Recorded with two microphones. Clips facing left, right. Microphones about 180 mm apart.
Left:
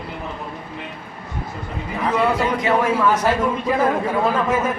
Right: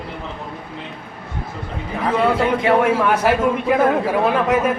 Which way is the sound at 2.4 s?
60° right (ahead or behind).